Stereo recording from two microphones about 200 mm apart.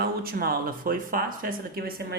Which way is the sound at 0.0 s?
50° right (ahead or behind).